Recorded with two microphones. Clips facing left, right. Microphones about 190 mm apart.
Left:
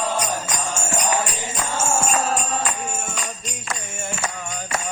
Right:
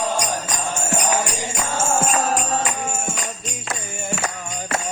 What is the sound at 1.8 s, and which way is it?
Music, 55° right (ahead or behind).